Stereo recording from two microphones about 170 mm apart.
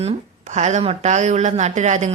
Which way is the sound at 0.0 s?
40° right (ahead or behind).